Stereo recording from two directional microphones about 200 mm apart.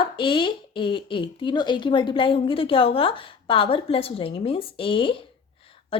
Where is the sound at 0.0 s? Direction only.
25° left (ahead or behind).